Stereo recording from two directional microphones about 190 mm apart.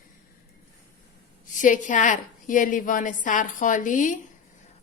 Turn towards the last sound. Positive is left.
turn(degrees=40)  # may be behind; listen again after turning